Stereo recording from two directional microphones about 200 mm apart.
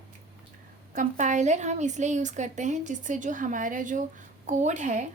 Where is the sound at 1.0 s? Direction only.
40° right (ahead or behind).